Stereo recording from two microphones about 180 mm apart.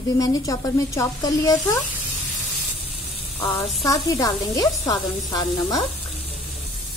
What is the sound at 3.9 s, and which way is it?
A woman's voice, 20° left (ahead or behind).